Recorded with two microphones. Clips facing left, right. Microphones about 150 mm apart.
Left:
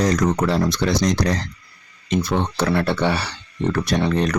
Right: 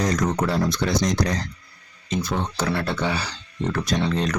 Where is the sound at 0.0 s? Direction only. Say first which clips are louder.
Left 4 dB; 80° left.